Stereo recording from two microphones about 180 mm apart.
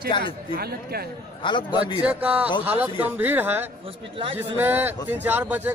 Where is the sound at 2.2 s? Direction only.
10° right (ahead or behind).